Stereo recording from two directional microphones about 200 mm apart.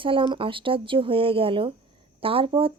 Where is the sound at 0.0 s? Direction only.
25° right (ahead or behind).